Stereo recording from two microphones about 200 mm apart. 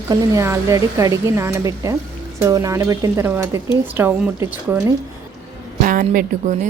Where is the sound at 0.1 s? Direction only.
15° right (ahead or behind).